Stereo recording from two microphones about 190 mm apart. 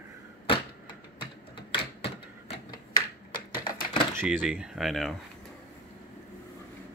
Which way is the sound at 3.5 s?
25° left (ahead or behind).